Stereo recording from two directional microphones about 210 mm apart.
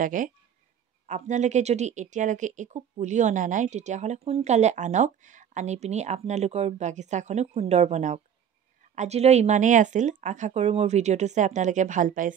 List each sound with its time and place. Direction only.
0.0 s speech: 40° right (ahead or behind)